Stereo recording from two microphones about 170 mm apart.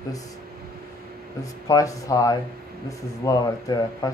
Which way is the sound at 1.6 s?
20° left (ahead or behind).